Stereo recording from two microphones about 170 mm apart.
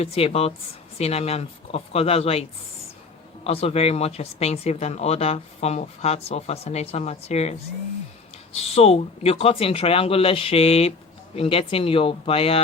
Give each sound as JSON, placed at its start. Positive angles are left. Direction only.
{"t": 0.0, "sound": "speech", "side_deg": 35}
{"t": 3.4, "sound": "speech", "side_deg": 35}
{"t": 8.5, "sound": "speech", "side_deg": 35}